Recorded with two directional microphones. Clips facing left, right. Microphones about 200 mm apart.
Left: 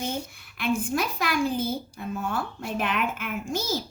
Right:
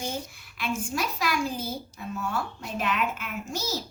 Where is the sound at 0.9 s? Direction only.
55° left (ahead or behind).